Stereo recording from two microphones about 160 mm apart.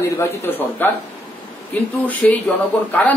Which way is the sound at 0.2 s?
10° left (ahead or behind).